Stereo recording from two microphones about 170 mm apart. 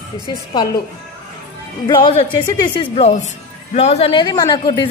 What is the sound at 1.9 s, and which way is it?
A woman's voice, 30° left (ahead or behind).